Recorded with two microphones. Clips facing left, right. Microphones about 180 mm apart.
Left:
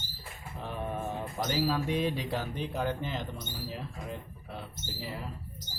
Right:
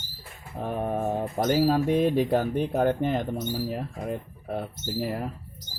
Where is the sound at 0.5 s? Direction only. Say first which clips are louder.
Right 8 dB; 50° right (ahead or behind).